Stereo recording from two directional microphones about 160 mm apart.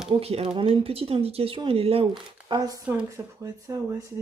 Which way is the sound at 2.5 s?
25° right (ahead or behind).